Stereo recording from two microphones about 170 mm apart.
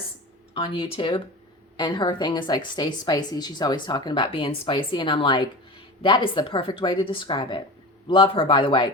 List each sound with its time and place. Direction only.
0.5 s a woman's voice: 30° left (ahead or behind)